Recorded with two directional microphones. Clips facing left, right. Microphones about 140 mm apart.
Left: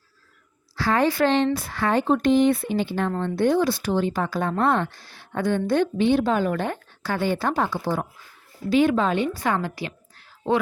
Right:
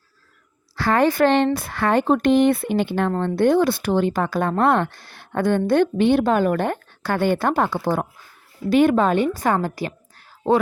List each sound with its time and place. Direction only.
0.8 s a woman's voice: 55° right (ahead or behind); by 10.6 s 40° right (ahead or behind)